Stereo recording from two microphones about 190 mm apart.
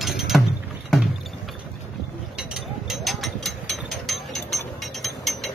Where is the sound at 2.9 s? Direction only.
Centre (ahead or behind).